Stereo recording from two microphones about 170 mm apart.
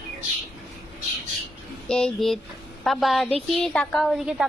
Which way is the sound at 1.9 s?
5° left (ahead or behind).